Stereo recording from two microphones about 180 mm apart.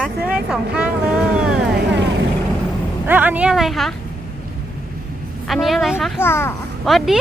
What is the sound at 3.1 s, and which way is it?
Speech, 10° right (ahead or behind).